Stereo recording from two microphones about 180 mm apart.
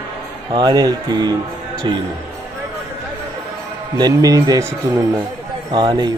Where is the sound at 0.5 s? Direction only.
25° right (ahead or behind).